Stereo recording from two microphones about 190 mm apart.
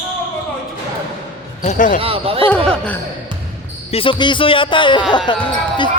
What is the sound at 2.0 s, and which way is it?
Speech, 30° right (ahead or behind).